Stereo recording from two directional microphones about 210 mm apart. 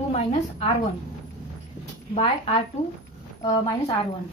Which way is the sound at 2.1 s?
25° left (ahead or behind).